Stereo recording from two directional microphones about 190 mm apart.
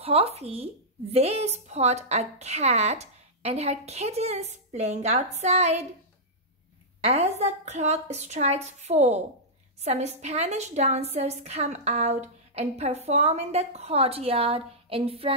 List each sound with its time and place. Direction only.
0.0 s speech: 30° right (ahead or behind)
7.0 s speech: 35° right (ahead or behind)